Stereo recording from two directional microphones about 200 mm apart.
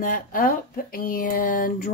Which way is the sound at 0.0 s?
45° left (ahead or behind).